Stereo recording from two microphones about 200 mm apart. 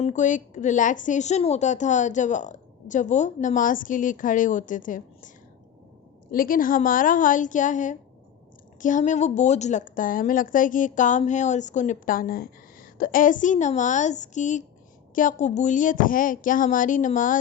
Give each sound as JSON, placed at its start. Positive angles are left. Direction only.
{"t": 0.0, "sound": "a woman's voice", "side_deg": 40}
{"t": 6.3, "sound": "a woman's voice", "side_deg": 45}